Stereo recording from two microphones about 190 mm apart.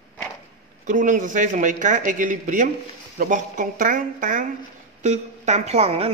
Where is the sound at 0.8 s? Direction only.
45° right (ahead or behind).